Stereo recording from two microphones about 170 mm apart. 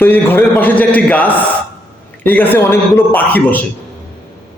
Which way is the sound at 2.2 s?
10° left (ahead or behind).